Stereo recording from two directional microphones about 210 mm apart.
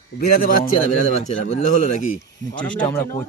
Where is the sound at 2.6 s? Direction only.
5° left (ahead or behind).